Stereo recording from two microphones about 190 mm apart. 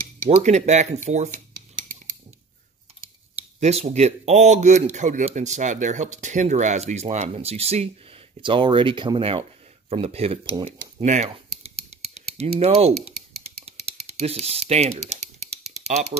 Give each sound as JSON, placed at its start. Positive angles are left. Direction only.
{"t": 0.4, "sound": "a man's voice", "side_deg": -35}
{"t": 3.5, "sound": "a man's voice", "side_deg": -35}
{"t": 12.9, "sound": "speech", "side_deg": 0}
{"t": 13.6, "sound": "typing", "side_deg": -30}